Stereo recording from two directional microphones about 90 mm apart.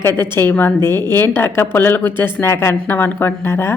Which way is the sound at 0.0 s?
25° left (ahead or behind).